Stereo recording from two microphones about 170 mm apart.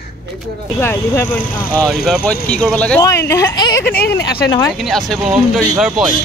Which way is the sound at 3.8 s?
65° left (ahead or behind).